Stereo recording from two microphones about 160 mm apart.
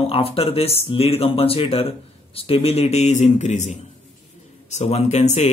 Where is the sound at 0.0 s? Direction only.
35° left (ahead or behind).